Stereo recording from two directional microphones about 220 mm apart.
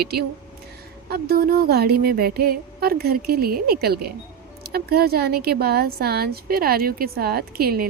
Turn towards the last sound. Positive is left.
turn(degrees=-45)  # may be behind; listen again after turning